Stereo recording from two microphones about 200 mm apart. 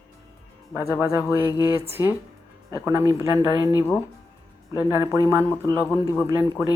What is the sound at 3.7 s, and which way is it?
Speech, 10° left (ahead or behind).